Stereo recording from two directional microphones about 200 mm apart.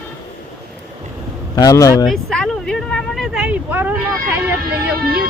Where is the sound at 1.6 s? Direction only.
15° left (ahead or behind).